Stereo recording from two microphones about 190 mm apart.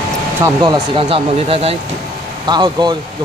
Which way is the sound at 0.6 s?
25° right (ahead or behind).